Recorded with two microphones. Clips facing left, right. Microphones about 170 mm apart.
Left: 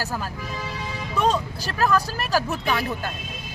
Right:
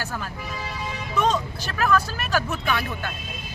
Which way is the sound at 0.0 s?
35° left (ahead or behind).